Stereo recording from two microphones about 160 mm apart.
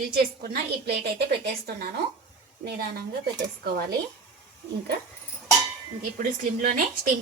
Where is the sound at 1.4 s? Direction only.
80° right.